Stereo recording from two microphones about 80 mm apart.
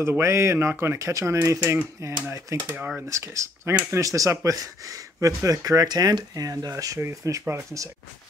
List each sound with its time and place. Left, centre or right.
0.2 s speech: right
2.3 s speech: right
3.1 s speech: right